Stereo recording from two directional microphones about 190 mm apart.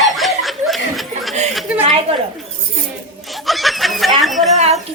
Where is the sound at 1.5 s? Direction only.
Centre (ahead or behind).